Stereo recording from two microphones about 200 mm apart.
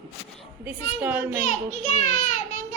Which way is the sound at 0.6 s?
10° right (ahead or behind).